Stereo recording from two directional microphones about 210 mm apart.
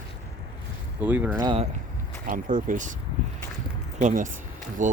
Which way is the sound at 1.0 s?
10° right (ahead or behind).